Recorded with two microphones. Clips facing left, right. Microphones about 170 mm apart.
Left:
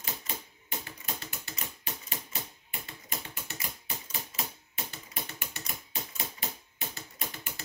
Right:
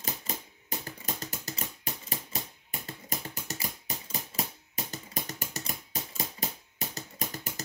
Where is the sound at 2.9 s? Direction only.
40° right (ahead or behind).